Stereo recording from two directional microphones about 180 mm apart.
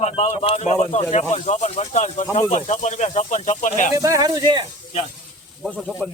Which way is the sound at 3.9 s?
20° right (ahead or behind).